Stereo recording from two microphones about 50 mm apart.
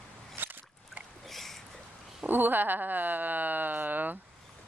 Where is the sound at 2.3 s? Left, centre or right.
Right.